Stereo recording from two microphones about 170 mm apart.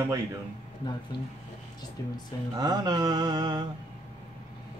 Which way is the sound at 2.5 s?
25° right (ahead or behind).